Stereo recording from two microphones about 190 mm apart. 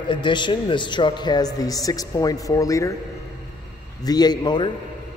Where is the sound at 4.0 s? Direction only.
20° left (ahead or behind).